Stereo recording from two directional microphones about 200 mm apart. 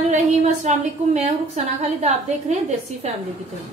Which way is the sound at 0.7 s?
35° right (ahead or behind).